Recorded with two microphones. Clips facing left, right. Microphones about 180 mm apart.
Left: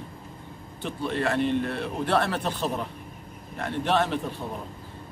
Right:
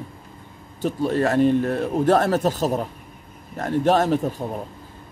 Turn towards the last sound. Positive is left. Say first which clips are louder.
# right 6 dB
turn(degrees=-40)  # may be behind; listen again after turning